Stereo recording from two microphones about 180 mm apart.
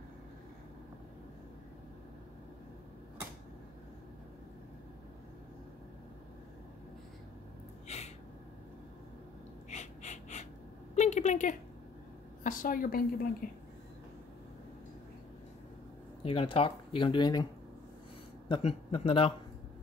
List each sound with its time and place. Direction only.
7.9 s gasp: 35° left (ahead or behind)
9.7 s gasp: 40° left (ahead or behind)
11.0 s a sound: 40° left (ahead or behind)
12.4 s a woman's voice: 50° left (ahead or behind)
16.3 s speech: 30° left (ahead or behind)
18.5 s a man's voice: 35° left (ahead or behind)